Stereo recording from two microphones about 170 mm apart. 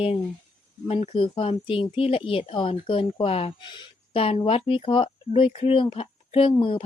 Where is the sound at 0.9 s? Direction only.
35° left (ahead or behind).